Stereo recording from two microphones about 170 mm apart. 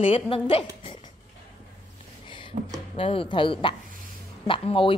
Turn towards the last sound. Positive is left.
turn(degrees=30)  # may be behind; listen again after turning